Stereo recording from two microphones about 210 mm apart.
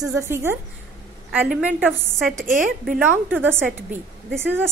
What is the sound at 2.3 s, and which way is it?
Speech, 40° right (ahead or behind).